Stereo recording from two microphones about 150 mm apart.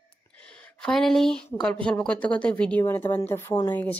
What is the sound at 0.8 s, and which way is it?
A woman's voice, centre (ahead or behind).